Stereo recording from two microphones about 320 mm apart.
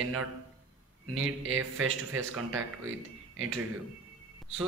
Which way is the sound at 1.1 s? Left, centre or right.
Right.